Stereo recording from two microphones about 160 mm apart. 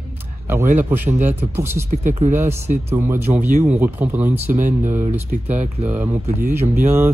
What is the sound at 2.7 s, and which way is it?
Speech, 50° right (ahead or behind).